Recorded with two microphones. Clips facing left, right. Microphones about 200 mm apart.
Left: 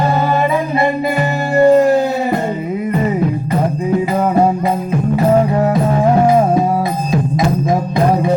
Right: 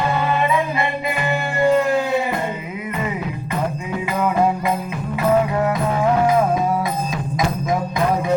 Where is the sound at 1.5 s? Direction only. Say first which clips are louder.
Left 8 dB; 40° left (ahead or behind).